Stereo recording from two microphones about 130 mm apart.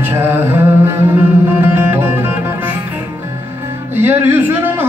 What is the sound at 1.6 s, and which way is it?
Music, 15° right (ahead or behind).